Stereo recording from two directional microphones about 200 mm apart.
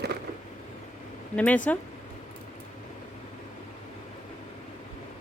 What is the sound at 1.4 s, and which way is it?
Speech, 5° left (ahead or behind).